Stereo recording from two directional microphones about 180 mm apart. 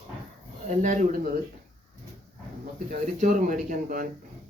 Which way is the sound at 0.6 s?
45° right (ahead or behind).